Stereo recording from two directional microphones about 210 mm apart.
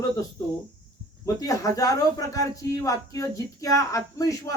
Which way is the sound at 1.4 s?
15° left (ahead or behind).